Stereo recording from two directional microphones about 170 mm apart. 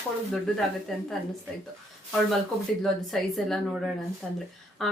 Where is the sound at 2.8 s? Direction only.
Centre (ahead or behind).